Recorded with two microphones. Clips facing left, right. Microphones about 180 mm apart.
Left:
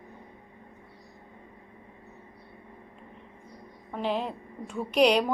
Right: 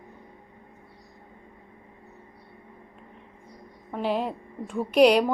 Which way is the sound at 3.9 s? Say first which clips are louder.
Right 3 dB; 5° right (ahead or behind).